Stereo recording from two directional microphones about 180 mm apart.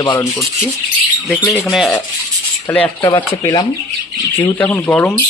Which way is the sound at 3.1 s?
20° left (ahead or behind).